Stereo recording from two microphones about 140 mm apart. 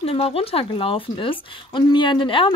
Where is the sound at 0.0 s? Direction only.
45° left (ahead or behind).